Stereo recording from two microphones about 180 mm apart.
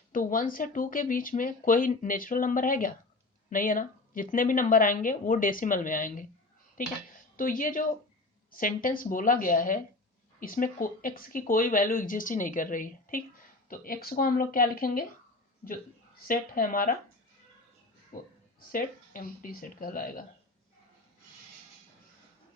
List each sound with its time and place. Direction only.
0.1 s speech: 50° left (ahead or behind)
16.2 s speech: 50° left (ahead or behind)
18.1 s speech: 50° left (ahead or behind)